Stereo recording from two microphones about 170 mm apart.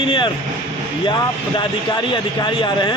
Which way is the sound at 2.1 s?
30° left (ahead or behind).